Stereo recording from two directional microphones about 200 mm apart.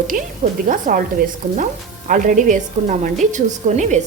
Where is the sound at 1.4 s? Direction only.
30° right (ahead or behind).